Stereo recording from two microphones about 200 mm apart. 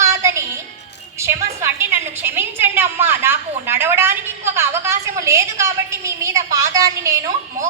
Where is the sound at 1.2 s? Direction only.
15° right (ahead or behind).